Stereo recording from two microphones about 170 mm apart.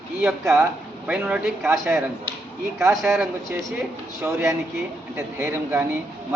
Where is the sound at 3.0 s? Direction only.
10° right (ahead or behind).